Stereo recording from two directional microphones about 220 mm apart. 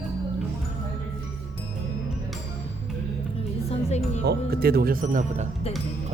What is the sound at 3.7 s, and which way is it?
Music, 30° left (ahead or behind).